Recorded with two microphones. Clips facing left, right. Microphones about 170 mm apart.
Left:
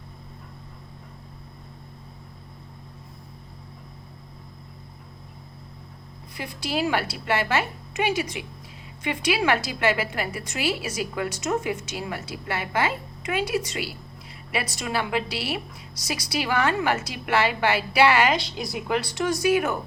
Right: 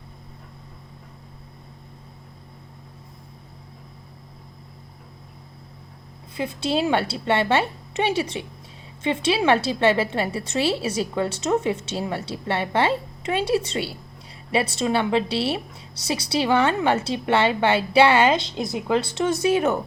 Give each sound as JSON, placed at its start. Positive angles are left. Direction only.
{"t": 6.3, "sound": "a woman's voice", "side_deg": -25}